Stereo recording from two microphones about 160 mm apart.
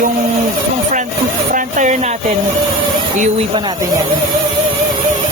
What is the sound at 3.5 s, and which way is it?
Speech, 25° right (ahead or behind).